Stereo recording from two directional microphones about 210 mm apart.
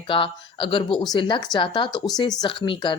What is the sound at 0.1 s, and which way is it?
A woman's voice, 25° left (ahead or behind).